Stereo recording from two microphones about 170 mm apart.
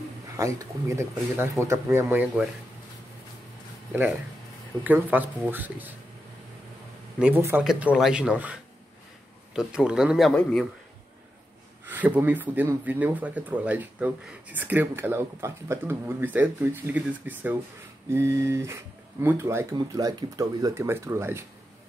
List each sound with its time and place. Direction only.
0.4 s speech: 20° right (ahead or behind)
4.8 s speech: 10° right (ahead or behind)
7.2 s a man's voice: 10° right (ahead or behind)
11.8 s speech: 10° right (ahead or behind)